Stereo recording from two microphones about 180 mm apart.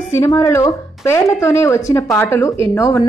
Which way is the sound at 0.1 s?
15° left (ahead or behind).